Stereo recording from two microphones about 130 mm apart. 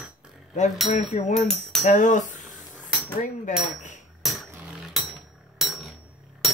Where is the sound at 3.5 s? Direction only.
70° left (ahead or behind).